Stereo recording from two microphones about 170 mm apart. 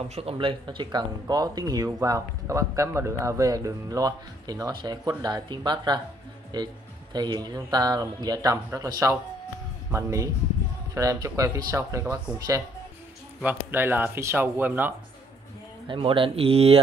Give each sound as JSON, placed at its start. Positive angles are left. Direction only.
{"t": 0.1, "sound": "speech", "side_deg": -35}
{"t": 15.9, "sound": "speech", "side_deg": -30}